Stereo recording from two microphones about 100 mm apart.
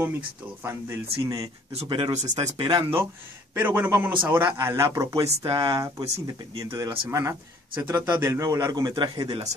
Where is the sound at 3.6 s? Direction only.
15° right (ahead or behind).